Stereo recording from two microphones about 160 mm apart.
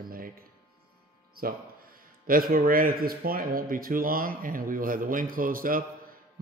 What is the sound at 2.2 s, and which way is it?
Speech, 60° right (ahead or behind).